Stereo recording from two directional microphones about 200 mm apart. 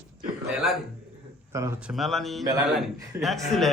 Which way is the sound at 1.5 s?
15° right (ahead or behind).